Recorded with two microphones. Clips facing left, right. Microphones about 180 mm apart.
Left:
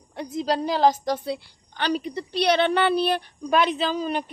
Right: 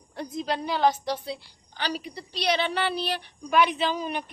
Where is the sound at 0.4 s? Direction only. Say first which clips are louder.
Left 4 dB; 40° left (ahead or behind).